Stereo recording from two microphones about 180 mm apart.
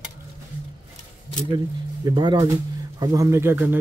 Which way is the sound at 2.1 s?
20° right (ahead or behind).